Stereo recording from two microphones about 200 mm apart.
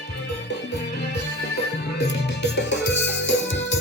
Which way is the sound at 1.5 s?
55° left (ahead or behind).